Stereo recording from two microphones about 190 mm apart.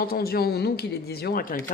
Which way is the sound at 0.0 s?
50° left (ahead or behind).